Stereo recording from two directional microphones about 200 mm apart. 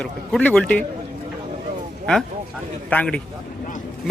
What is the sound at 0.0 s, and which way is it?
Speech, 5° left (ahead or behind).